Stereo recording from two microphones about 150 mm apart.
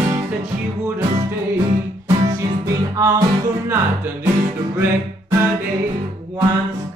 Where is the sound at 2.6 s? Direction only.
25° right (ahead or behind).